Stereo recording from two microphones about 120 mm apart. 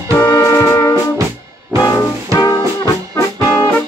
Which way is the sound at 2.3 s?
30° left (ahead or behind).